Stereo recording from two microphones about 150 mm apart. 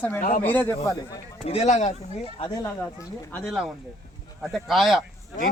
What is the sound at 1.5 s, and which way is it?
Speech, 45° left (ahead or behind).